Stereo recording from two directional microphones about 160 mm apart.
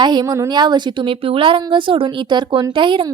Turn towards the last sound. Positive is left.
turn(degrees=-30)  # may be behind; listen again after turning